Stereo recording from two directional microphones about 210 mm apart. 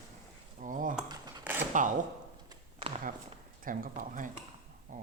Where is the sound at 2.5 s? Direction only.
25° right (ahead or behind).